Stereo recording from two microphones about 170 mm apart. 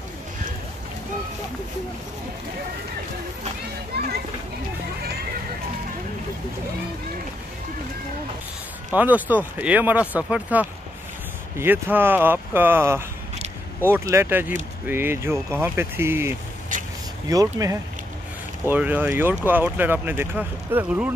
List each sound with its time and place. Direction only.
3.9 s a child's voice: 70° right (ahead or behind)
8.9 s speech: 10° right (ahead or behind)
16.7 s vehicle: 50° right (ahead or behind)
17.3 s speech: 20° right (ahead or behind)
18.7 s speech: 10° right (ahead or behind)